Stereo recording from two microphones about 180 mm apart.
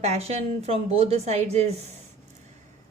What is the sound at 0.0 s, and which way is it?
A woman's voice, 35° right (ahead or behind).